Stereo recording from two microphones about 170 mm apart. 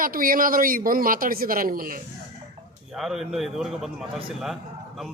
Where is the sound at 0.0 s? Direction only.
55° right (ahead or behind).